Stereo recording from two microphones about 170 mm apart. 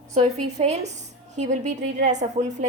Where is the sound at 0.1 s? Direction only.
40° right (ahead or behind).